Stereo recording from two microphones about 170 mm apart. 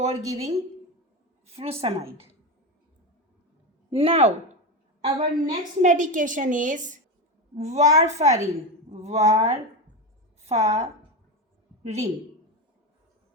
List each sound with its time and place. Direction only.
0.0 s a woman's voice: 40° right (ahead or behind)
3.9 s a woman's voice: 35° right (ahead or behind)
5.0 s a woman's voice: 45° right (ahead or behind)